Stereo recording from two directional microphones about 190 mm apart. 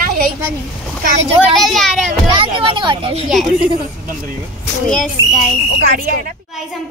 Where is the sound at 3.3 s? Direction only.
Centre (ahead or behind).